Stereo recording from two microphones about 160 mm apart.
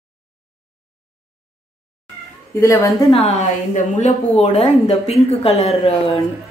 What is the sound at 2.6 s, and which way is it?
Speech, 20° left (ahead or behind).